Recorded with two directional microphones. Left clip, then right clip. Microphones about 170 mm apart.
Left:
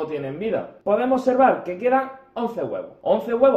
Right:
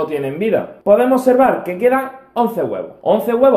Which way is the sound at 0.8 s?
15° right (ahead or behind).